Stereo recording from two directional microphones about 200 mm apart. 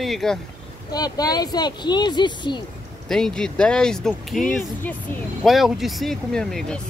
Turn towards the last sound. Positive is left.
turn(degrees=5)  # may be behind; listen again after turning